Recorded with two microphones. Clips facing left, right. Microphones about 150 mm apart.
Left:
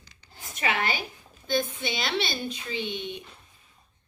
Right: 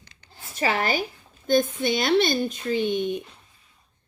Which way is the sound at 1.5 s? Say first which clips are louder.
Right 7 dB; 50° right (ahead or behind).